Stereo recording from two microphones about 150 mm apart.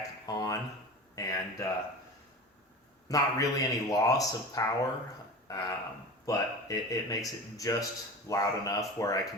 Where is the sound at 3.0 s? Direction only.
20° left (ahead or behind).